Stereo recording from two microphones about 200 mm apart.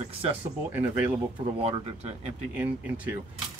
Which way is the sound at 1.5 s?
30° right (ahead or behind).